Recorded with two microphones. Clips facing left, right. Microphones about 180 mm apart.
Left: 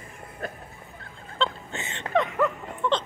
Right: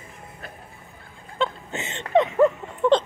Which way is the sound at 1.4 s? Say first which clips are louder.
Right 2 dB; 20° right (ahead or behind).